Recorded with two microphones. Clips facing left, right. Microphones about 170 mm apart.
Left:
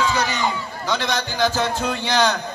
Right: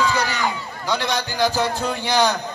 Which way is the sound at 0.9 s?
10° right (ahead or behind).